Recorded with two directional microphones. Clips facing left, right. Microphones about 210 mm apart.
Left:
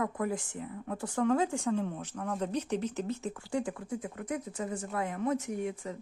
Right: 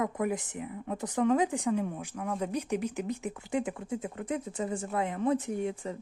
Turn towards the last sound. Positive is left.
turn(degrees=-30)  # may be behind; listen again after turning